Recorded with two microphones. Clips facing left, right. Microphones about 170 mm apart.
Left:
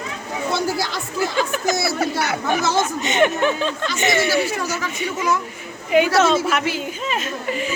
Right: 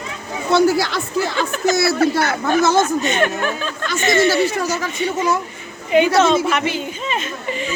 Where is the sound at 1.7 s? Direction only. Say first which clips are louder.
Right 7 dB; 70° right (ahead or behind).